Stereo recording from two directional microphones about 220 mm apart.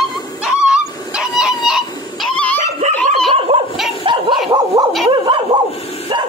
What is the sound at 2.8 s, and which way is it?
Dog, 35° right (ahead or behind).